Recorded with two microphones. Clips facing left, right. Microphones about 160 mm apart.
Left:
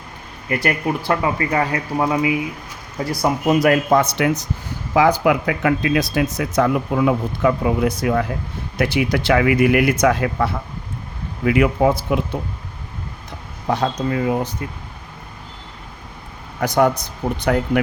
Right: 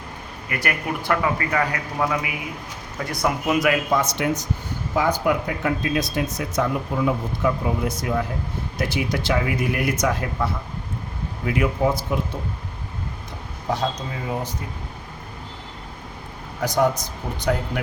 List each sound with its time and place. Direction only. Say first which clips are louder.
0.4 s speech: left 6 dB; 30° left (ahead or behind); by 4.3 s 60° left (ahead or behind)
4.9 s speech: left 6 dB; 90° left; by 12.2 s 75° left (ahead or behind)
13.7 s speech: left 5 dB; 65° left (ahead or behind)
16.6 s speech: left 4 dB; 65° left (ahead or behind)